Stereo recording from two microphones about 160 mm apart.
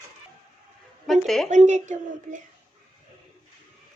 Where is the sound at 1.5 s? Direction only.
50° right (ahead or behind).